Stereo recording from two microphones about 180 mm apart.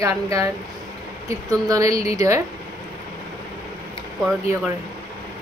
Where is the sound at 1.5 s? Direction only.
20° right (ahead or behind).